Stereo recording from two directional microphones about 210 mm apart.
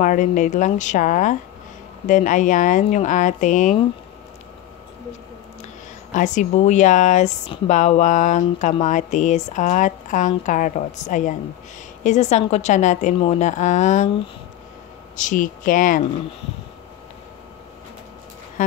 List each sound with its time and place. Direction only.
0.0 s speech: 35° left (ahead or behind)
6.1 s speech: 35° left (ahead or behind)
15.1 s speech: 40° left (ahead or behind)
18.6 s speech: 40° left (ahead or behind)